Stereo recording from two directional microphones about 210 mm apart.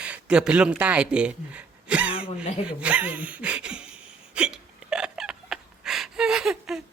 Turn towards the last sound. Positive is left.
turn(degrees=0)  # may be behind; listen again after turning